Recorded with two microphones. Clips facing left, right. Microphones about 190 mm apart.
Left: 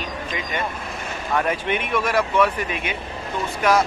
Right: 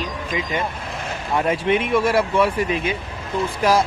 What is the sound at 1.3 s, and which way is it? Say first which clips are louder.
Speech: right 4 dB; 30° right (ahead or behind).